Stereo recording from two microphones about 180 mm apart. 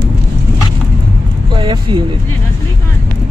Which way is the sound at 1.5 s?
30° right (ahead or behind).